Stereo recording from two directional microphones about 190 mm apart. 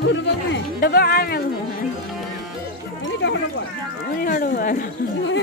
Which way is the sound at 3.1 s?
70° left (ahead or behind).